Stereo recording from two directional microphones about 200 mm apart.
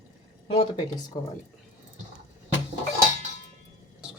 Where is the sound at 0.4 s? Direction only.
30° left (ahead or behind).